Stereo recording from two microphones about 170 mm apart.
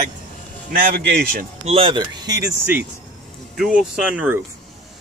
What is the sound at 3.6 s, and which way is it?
Speech, centre (ahead or behind).